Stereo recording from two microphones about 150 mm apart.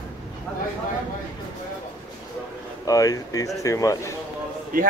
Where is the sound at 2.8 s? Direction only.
25° left (ahead or behind).